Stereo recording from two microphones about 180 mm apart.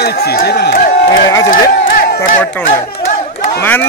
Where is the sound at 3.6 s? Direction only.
10° left (ahead or behind).